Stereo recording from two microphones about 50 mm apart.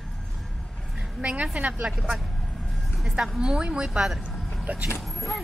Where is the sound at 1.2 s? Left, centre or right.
Right.